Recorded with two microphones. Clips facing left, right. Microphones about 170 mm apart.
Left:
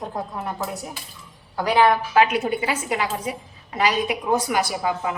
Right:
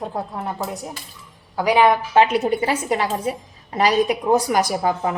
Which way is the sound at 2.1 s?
30° right (ahead or behind).